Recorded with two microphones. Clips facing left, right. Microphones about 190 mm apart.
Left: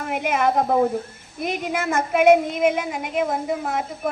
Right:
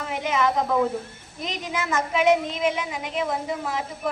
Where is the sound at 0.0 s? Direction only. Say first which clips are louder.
Left 3 dB; 55° left (ahead or behind).